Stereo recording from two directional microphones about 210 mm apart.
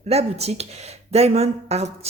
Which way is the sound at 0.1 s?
30° right (ahead or behind).